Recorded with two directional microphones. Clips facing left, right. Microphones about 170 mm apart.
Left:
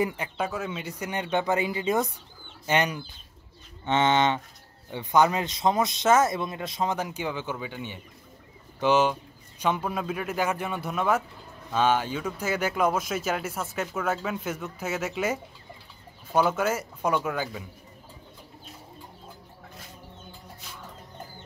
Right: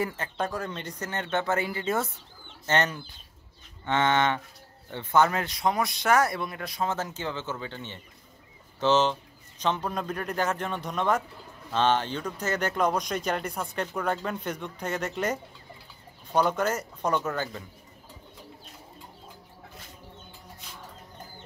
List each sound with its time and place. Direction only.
0.0 s speech: 15° left (ahead or behind)